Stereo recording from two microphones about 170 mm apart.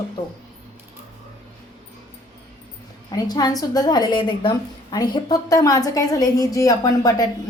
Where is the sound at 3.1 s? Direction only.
25° left (ahead or behind).